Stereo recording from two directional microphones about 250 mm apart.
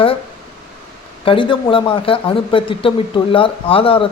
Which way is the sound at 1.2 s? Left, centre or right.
Centre.